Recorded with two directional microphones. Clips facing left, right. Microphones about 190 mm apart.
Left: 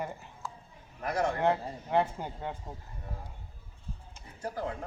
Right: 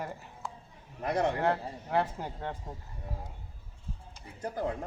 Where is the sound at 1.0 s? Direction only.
20° right (ahead or behind).